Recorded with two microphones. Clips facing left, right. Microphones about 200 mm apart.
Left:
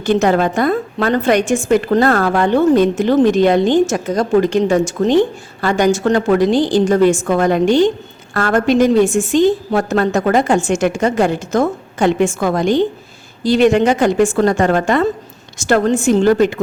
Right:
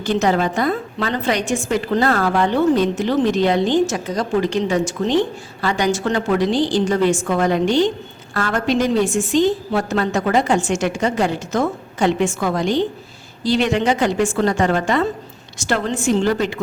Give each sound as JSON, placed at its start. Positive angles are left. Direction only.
{"t": 0.0, "sound": "a woman's voice", "side_deg": 50}